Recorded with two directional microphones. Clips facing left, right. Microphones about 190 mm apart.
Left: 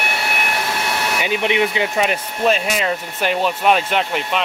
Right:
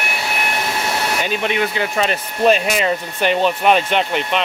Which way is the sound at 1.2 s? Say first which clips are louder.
Left 4 dB; 15° left (ahead or behind).